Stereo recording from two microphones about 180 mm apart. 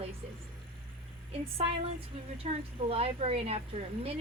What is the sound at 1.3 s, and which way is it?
Speech, 35° right (ahead or behind).